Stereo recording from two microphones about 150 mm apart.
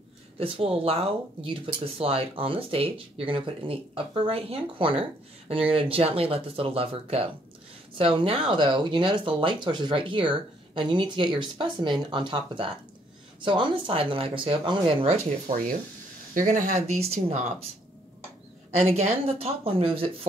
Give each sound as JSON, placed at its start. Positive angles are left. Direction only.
{"t": 0.4, "sound": "speech", "side_deg": -40}
{"t": 16.3, "sound": "speech", "side_deg": -60}
{"t": 18.9, "sound": "speech", "side_deg": -45}